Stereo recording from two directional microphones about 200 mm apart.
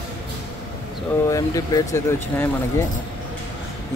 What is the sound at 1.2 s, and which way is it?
Speech, 15° left (ahead or behind).